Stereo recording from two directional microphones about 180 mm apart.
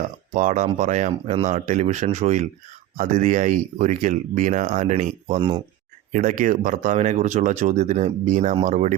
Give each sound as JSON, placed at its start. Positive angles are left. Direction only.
{"t": 0.3, "sound": "speech", "side_deg": -45}
{"t": 5.4, "sound": "speech", "side_deg": -25}
{"t": 6.1, "sound": "speech", "side_deg": -45}